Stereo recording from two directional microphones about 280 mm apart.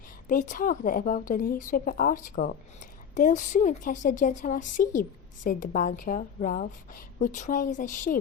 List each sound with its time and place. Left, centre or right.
0.3 s a woman's voice: left